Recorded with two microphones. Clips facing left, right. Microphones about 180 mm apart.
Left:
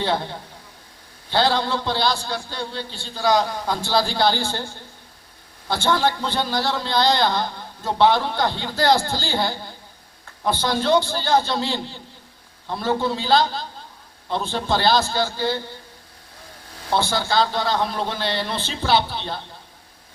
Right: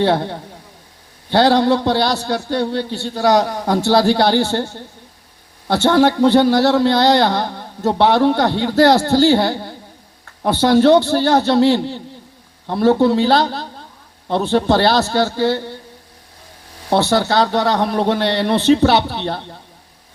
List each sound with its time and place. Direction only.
0.0 s speech: 60° right (ahead or behind)
3.5 s a man's voice: 50° right (ahead or behind)
3.8 s speech: 65° right (ahead or behind)
16.9 s speech: 65° right (ahead or behind)